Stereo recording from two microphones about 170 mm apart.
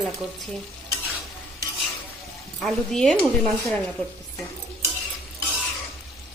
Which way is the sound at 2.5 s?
5° left (ahead or behind).